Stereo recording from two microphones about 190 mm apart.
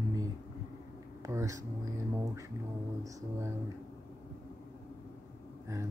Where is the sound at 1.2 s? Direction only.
15° right (ahead or behind).